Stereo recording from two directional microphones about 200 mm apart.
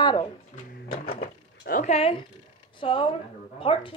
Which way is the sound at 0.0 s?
20° left (ahead or behind).